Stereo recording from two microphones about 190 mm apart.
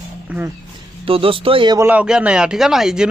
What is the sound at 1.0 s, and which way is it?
Speech, 30° right (ahead or behind).